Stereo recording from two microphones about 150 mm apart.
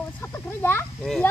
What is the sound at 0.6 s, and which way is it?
Speech, 15° left (ahead or behind).